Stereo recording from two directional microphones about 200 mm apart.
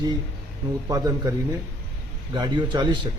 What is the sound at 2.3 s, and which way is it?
Speech, 20° right (ahead or behind).